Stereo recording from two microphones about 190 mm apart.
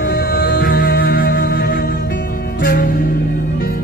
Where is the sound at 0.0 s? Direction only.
50° left (ahead or behind).